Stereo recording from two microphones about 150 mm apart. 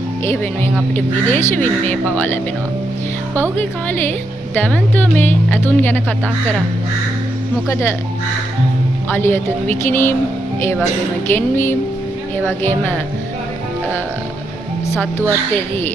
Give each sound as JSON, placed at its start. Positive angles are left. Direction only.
{"t": 0.2, "sound": "speech", "side_deg": 15}
{"t": 3.5, "sound": "speech", "side_deg": 15}
{"t": 9.1, "sound": "speech", "side_deg": 15}
{"t": 11.3, "sound": "speech", "side_deg": 15}